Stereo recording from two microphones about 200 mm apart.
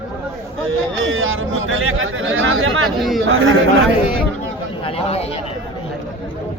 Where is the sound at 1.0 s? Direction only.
80° right.